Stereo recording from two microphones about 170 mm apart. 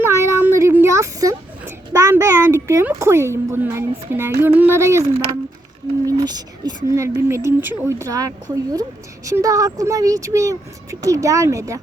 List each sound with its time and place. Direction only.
0.0 s child singing: 15° right (ahead or behind)
6.1 s a woman's voice: 25° right (ahead or behind)